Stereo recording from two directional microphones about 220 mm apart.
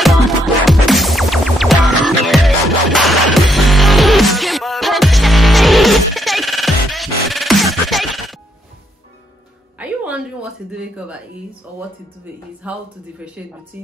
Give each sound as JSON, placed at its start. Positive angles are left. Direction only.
{"t": 0.7, "sound": "music", "side_deg": 0}
{"t": 9.8, "sound": "a sound", "side_deg": -5}
{"t": 12.6, "sound": "speech", "side_deg": -5}